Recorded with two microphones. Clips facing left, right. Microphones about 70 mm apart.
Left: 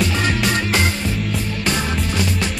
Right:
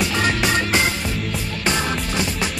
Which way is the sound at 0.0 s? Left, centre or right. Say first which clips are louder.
Left 1 dB; centre.